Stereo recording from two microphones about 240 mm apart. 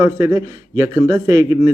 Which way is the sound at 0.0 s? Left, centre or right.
Centre.